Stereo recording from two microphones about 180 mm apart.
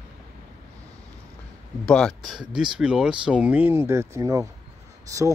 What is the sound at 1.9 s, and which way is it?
Speech, 5° left (ahead or behind).